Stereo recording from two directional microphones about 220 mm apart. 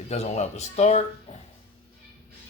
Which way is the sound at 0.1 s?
30° left (ahead or behind).